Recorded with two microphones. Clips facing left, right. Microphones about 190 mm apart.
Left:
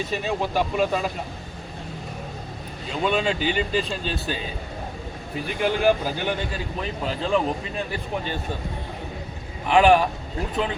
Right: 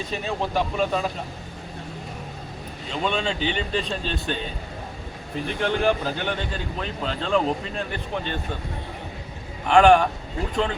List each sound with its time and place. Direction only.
0.1 s speech: 5° left (ahead or behind)
2.9 s speech: 5° left (ahead or behind)
5.5 s speech: 10° left (ahead or behind)
9.6 s speech: 5° left (ahead or behind)